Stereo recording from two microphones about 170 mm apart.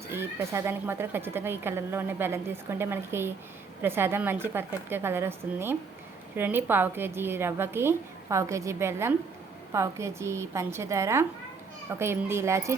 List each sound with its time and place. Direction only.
0.1 s a woman's voice: 15° right (ahead or behind)